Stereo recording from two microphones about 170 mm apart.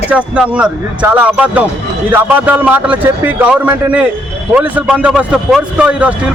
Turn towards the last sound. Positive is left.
turn(degrees=-5)  # may be behind; listen again after turning